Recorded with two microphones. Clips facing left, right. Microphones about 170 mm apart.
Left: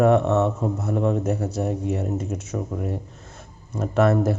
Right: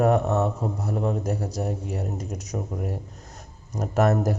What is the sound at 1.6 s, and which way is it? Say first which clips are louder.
Speech: left 5 dB; centre (ahead or behind).